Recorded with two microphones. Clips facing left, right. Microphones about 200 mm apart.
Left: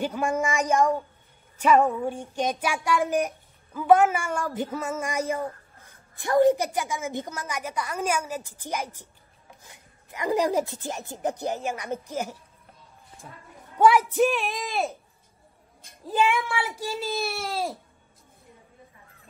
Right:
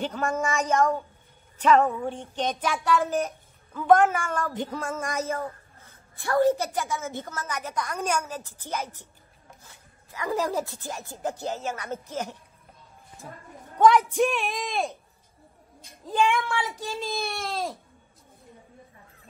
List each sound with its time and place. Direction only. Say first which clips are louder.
0.0 s child singing: left 2 dB; 10° left (ahead or behind)
13.7 s speech: even; 10° left (ahead or behind)
16.1 s child singing: even; 5° left (ahead or behind)